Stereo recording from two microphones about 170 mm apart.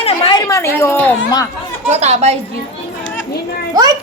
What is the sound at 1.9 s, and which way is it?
Speech, 40° right (ahead or behind).